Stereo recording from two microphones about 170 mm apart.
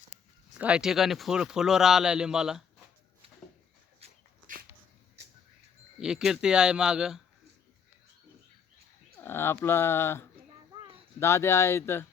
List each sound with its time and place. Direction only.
0.6 s a man's voice: 5° right (ahead or behind)
4.5 s dog: 50° right (ahead or behind)
5.2 s a sound: 75° right (ahead or behind)
6.0 s a man's voice: 5° right (ahead or behind)
9.1 s speech: 15° left (ahead or behind)
10.7 s a sound: 30° right (ahead or behind)
11.2 s speech: 15° left (ahead or behind)